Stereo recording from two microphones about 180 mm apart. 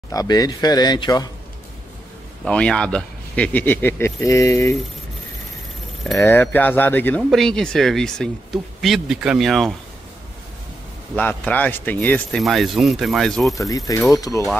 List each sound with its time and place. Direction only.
0.1 s speech: 20° left (ahead or behind)
2.4 s speech: 5° left (ahead or behind)
6.1 s speech: 10° left (ahead or behind)
11.1 s speech: 10° left (ahead or behind)
13.6 s speech: 20° left (ahead or behind)